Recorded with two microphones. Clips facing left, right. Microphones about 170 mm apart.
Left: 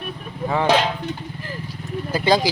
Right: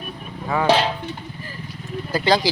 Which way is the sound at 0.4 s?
25° left (ahead or behind).